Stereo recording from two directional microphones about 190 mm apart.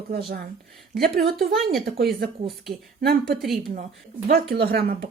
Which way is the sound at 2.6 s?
55° right (ahead or behind).